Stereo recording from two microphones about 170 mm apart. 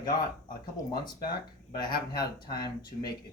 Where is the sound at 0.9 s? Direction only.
25° left (ahead or behind).